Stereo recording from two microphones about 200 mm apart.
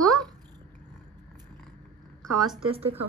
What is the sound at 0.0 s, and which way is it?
Babbling, centre (ahead or behind).